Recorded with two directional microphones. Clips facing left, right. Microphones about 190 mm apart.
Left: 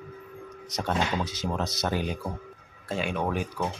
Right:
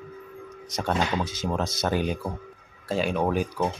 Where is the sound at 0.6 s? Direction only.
50° right (ahead or behind).